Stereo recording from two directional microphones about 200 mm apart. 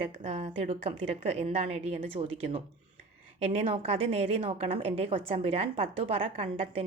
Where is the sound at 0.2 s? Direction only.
35° right (ahead or behind).